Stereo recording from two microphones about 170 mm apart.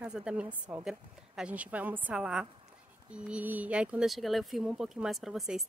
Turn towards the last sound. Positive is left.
turn(degrees=0)  # may be behind; listen again after turning